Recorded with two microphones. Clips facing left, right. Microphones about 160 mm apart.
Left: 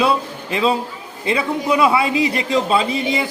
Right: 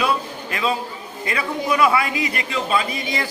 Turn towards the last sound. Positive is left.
turn(degrees=25)  # may be behind; listen again after turning